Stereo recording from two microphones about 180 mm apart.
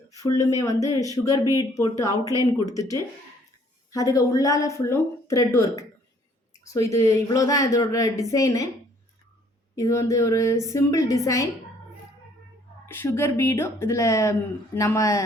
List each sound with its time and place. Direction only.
0.1 s speech: 20° left (ahead or behind)
7.1 s speech: 20° left (ahead or behind)
9.7 s speech: 15° left (ahead or behind)
12.9 s speech: 15° left (ahead or behind)